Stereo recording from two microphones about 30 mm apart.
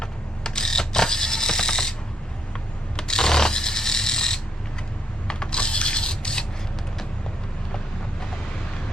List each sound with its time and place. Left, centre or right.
0.0 s mechanisms: left
2.9 s a sound: left
5.3 s mechanisms: left